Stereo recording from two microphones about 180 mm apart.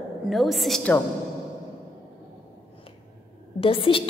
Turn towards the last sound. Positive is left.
turn(degrees=30)  # may be behind; listen again after turning